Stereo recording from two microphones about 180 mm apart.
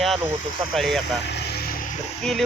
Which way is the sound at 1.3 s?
70° left (ahead or behind).